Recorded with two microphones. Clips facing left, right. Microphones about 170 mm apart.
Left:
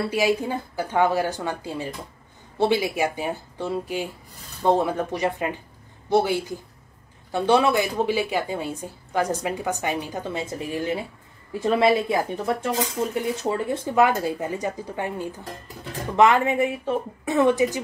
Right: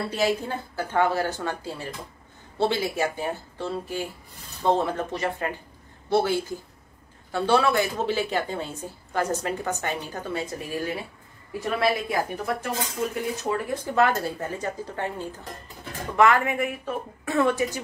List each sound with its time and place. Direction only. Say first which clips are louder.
0.1 s a woman's voice: left 1 dB; 10° left (ahead or behind)
13.9 s a woman's voice: left 3 dB; 15° left (ahead or behind)